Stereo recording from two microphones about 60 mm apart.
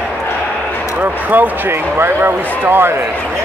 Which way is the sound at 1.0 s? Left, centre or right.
Right.